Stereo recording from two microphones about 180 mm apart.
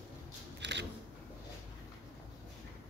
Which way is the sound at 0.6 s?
75° right (ahead or behind).